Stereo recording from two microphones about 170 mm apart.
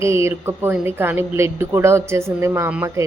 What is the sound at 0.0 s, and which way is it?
A woman's voice, 15° right (ahead or behind).